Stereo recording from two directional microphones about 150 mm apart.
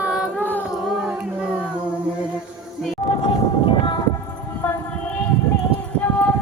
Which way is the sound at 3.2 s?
35° left (ahead or behind).